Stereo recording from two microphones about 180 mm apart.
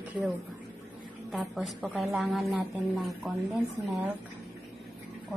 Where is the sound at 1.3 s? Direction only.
Centre (ahead or behind).